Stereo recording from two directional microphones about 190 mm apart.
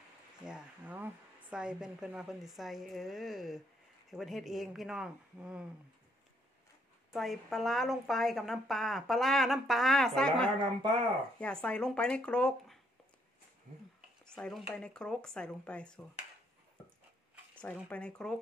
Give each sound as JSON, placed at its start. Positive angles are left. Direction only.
{"t": 0.5, "sound": "speech", "side_deg": -5}
{"t": 7.1, "sound": "speech", "side_deg": 0}
{"t": 10.6, "sound": "speech", "side_deg": -25}
{"t": 11.3, "sound": "speech", "side_deg": 5}
{"t": 14.2, "sound": "speech", "side_deg": 5}
{"t": 17.8, "sound": "speech", "side_deg": 5}